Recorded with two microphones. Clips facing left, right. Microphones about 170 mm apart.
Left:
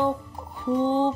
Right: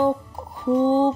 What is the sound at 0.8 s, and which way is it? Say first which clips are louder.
Mantra: right 4 dB; 40° right (ahead or behind).